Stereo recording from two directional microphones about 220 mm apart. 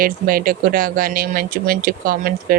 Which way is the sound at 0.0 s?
40° right (ahead or behind).